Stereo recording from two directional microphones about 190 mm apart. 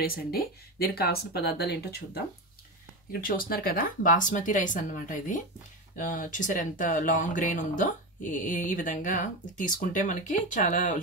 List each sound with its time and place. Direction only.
0.0 s speech: 50° left (ahead or behind)